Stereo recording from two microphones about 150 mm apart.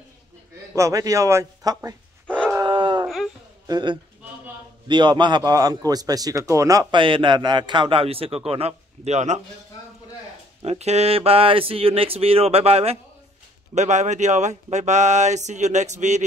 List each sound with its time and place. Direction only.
0.7 s a man's voice: 20° right (ahead or behind)
2.2 s a sound: 5° left (ahead or behind)
2.6 s dog: 30° right (ahead or behind)
3.6 s a man's voice: 30° right (ahead or behind)
7.0 s speech: 35° right (ahead or behind); by 9.4 s 50° right (ahead or behind)
10.6 s speech: 45° right (ahead or behind)